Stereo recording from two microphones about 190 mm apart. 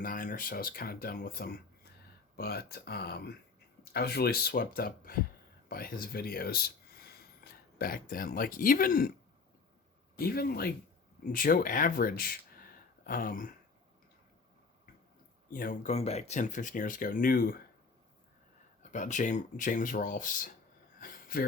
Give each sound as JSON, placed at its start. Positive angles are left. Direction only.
{"t": 0.0, "sound": "speech", "side_deg": 45}
{"t": 10.2, "sound": "speech", "side_deg": 50}
{"t": 15.5, "sound": "speech", "side_deg": 45}
{"t": 18.8, "sound": "speech", "side_deg": 40}
{"t": 21.0, "sound": "a sound", "side_deg": 50}